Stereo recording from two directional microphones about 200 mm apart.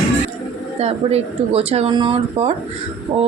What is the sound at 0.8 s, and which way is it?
Speech, 30° right (ahead or behind).